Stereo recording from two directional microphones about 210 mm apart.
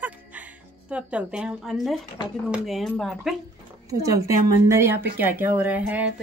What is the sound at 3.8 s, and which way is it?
Speech, 15° right (ahead or behind).